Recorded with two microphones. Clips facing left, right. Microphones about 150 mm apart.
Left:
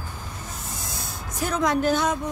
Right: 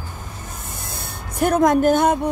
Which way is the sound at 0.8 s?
60° right (ahead or behind).